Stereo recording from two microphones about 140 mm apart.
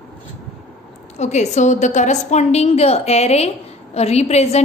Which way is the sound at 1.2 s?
55° left (ahead or behind).